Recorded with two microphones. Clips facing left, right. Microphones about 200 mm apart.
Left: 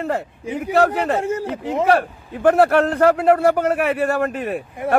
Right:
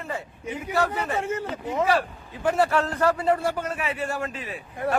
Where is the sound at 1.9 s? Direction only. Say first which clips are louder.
Left 6 dB; 60° left (ahead or behind).